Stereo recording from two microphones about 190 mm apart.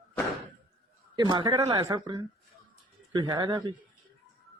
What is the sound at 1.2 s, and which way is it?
Speech, 25° right (ahead or behind).